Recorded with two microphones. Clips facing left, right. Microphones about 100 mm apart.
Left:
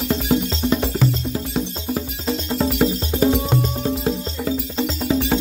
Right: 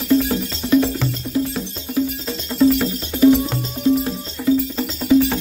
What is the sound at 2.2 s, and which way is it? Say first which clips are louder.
Music: right 4 dB; 25° left (ahead or behind).